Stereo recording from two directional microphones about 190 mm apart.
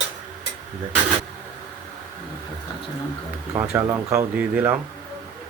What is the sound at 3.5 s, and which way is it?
Speech, 15° right (ahead or behind).